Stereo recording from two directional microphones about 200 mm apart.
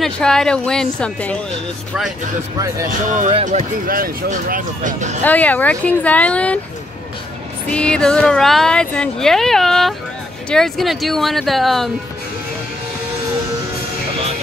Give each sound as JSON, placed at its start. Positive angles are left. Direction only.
{"t": 0.0, "sound": "speech", "side_deg": 0}
{"t": 3.1, "sound": "speech", "side_deg": -35}
{"t": 5.2, "sound": "speech", "side_deg": 10}
{"t": 7.7, "sound": "speech", "side_deg": 5}